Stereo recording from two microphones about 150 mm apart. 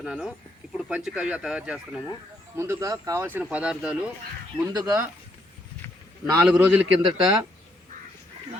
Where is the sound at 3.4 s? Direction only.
5° right (ahead or behind).